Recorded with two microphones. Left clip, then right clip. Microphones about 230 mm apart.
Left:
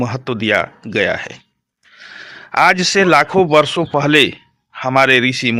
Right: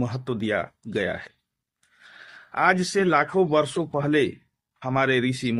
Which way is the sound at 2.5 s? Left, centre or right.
Left.